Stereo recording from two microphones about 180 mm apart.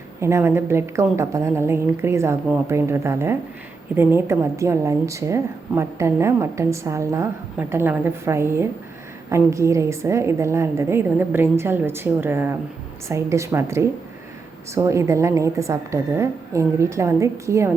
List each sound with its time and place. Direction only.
0.2 s a woman's voice: 15° right (ahead or behind)